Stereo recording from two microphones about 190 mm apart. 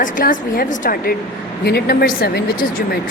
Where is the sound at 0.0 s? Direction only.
45° left (ahead or behind).